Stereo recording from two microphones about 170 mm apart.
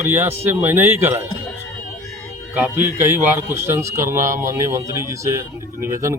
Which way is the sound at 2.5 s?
10° right (ahead or behind).